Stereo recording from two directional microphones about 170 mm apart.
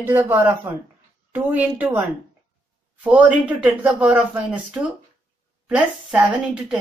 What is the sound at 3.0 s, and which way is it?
Speech, 10° right (ahead or behind).